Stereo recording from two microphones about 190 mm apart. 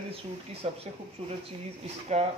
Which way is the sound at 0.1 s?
30° right (ahead or behind).